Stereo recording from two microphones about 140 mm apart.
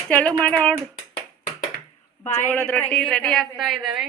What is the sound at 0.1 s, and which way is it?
Speech, 10° left (ahead or behind).